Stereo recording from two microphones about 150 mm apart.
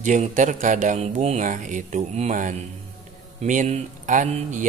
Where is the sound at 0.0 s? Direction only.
55° right (ahead or behind).